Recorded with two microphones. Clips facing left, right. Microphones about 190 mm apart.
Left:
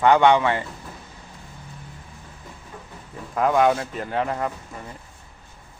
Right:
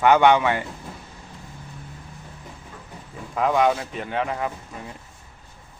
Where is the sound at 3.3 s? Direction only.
Centre (ahead or behind).